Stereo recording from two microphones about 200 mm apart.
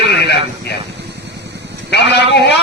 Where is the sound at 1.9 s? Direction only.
60° left (ahead or behind).